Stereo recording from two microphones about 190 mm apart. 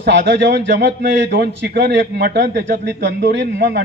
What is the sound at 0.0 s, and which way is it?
A man's voice, 70° right (ahead or behind).